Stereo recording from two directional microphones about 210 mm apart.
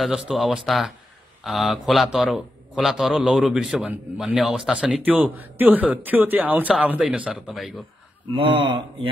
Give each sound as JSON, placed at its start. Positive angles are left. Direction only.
{"t": 0.0, "sound": "a man's voice", "side_deg": 0}
{"t": 8.4, "sound": "speech", "side_deg": -25}